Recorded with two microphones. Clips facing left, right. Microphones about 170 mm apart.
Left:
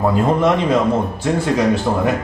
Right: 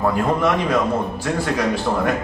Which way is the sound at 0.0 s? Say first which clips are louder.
Left 3 dB; 25° left (ahead or behind).